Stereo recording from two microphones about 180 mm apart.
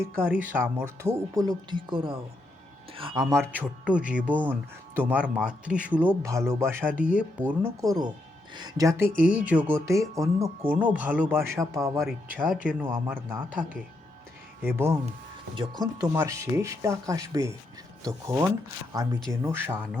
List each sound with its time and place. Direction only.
0.0 s speech: 10° right (ahead or behind)
6.9 s speech: 50° left (ahead or behind)
7.2 s speech: 10° right (ahead or behind)
11.9 s speech: 5° right (ahead or behind)
15.5 s speech: 25° right (ahead or behind)